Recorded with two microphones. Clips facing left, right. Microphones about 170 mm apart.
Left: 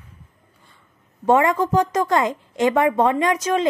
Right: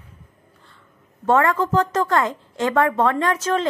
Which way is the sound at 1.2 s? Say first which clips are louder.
Left 1 dB; 15° left (ahead or behind).